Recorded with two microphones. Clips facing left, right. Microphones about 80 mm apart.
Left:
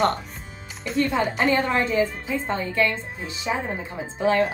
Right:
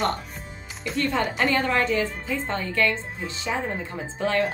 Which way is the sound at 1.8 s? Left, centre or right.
Left.